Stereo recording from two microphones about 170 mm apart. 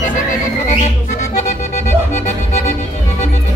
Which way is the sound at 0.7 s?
45° left (ahead or behind).